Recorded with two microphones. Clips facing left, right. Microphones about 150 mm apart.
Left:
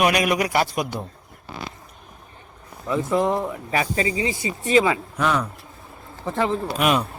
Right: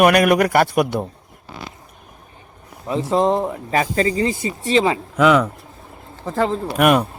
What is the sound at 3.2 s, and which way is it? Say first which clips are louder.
Speech: right 5 dB; 30° right (ahead or behind).